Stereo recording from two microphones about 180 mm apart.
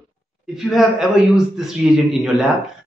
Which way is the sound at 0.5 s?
Centre (ahead or behind).